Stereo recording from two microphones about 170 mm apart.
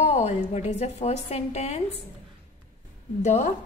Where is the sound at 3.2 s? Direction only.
45° left (ahead or behind).